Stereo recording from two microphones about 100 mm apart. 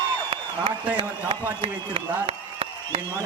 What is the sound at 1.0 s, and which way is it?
Speech, 70° right (ahead or behind).